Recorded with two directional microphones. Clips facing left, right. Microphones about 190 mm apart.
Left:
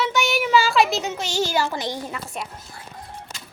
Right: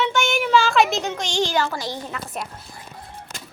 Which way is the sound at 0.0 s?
5° left (ahead or behind).